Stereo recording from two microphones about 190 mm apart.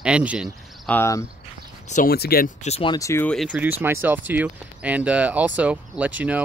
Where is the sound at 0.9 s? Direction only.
15° left (ahead or behind).